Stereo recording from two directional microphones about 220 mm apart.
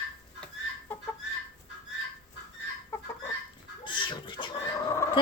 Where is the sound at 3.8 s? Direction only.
20° left (ahead or behind).